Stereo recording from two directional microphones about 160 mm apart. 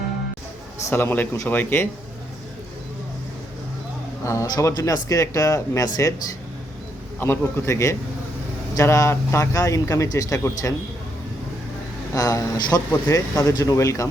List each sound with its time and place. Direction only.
0.9 s a man's voice: 15° left (ahead or behind)
4.2 s a man's voice: 20° left (ahead or behind)
7.2 s a man's voice: 15° left (ahead or behind)
12.1 s a man's voice: 20° left (ahead or behind)